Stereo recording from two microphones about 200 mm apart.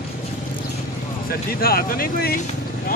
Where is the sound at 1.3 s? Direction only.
50° left (ahead or behind).